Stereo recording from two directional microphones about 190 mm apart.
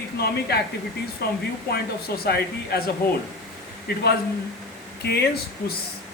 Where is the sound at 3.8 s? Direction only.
55° left (ahead or behind).